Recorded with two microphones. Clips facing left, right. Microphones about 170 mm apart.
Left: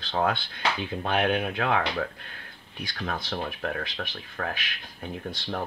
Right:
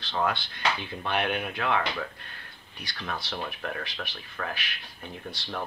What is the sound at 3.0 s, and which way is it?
Speech, 50° left (ahead or behind).